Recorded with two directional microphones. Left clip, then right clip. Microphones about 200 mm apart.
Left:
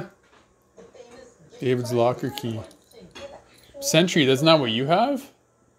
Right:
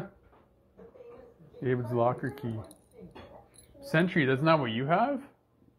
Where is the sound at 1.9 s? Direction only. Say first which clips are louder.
Left 5 dB; 50° left (ahead or behind).